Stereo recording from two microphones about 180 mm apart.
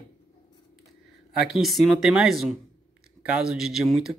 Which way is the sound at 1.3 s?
Centre (ahead or behind).